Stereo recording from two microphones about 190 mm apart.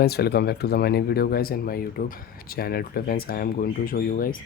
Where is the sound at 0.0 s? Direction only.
55° left (ahead or behind).